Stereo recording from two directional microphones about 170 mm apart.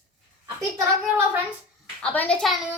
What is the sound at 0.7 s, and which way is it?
Speech, 10° right (ahead or behind).